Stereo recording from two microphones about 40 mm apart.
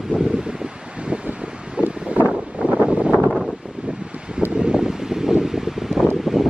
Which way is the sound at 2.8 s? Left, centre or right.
Right.